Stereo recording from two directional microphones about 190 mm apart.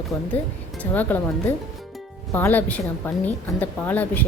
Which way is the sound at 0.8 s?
10° left (ahead or behind).